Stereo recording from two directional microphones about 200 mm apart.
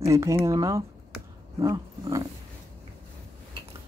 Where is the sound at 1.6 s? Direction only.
15° right (ahead or behind).